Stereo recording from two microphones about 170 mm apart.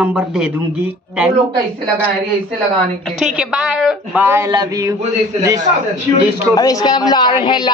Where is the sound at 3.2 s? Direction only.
5° right (ahead or behind).